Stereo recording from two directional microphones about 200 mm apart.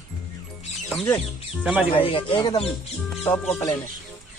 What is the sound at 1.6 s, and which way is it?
Speech, 5° right (ahead or behind).